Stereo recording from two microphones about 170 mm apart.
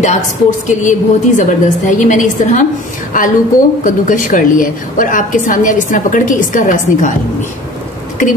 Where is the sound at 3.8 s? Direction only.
50° left (ahead or behind).